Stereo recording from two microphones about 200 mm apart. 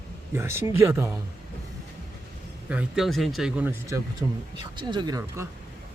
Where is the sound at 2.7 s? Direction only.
5° right (ahead or behind).